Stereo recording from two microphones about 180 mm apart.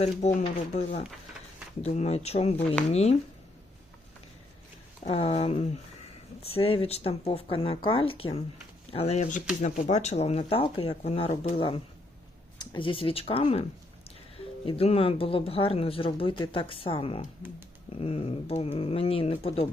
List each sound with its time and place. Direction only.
0.4 s speech: 40° left (ahead or behind)
5.0 s speech: 35° left (ahead or behind)